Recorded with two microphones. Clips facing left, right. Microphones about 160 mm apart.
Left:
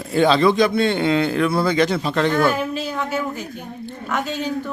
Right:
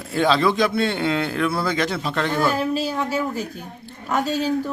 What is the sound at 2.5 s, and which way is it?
Speech, 35° right (ahead or behind).